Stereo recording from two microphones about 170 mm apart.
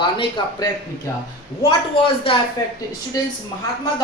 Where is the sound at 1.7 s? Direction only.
30° left (ahead or behind).